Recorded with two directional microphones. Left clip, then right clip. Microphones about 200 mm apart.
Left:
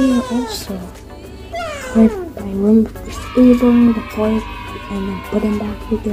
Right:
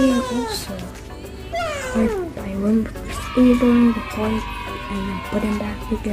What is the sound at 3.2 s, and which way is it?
Speech, centre (ahead or behind).